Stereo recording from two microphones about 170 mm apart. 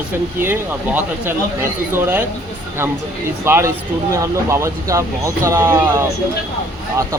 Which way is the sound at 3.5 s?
15° right (ahead or behind).